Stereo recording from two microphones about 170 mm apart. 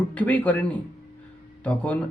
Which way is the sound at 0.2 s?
10° left (ahead or behind).